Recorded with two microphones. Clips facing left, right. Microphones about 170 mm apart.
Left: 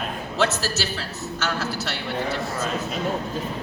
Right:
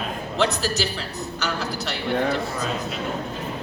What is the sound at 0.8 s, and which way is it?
A woman's voice, 5° left (ahead or behind).